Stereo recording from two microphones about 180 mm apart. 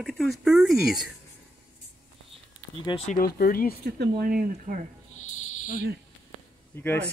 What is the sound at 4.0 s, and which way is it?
Speech, 60° right (ahead or behind).